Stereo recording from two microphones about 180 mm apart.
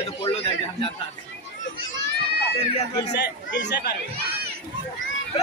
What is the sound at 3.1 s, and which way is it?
Speech, 70° left (ahead or behind).